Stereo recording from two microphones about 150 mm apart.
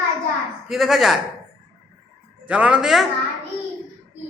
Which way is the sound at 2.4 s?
10° right (ahead or behind).